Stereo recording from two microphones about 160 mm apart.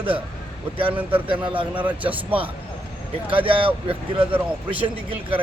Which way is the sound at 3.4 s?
35° right (ahead or behind).